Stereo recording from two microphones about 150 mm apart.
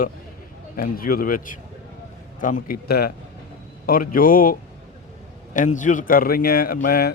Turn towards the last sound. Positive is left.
turn(degrees=85)